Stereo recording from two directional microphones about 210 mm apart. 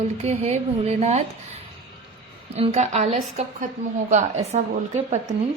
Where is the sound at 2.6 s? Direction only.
30° right (ahead or behind).